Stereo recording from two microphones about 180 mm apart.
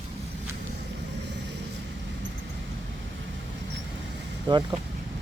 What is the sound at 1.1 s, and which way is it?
Vehicle, 75° right (ahead or behind).